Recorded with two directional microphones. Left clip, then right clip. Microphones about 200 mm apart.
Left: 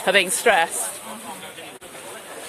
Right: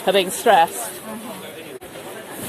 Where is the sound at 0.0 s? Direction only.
30° left (ahead or behind).